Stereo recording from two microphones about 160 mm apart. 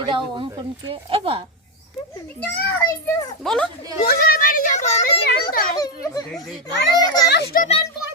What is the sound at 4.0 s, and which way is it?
A woman's voice, 70° left (ahead or behind).